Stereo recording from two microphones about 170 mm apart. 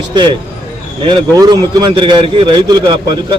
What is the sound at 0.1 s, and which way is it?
Speech, 25° right (ahead or behind).